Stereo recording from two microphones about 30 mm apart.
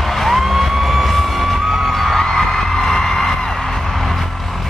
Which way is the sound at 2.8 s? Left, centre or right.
Centre.